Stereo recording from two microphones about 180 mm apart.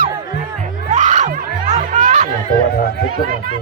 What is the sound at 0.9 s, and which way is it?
Music, 40° right (ahead or behind).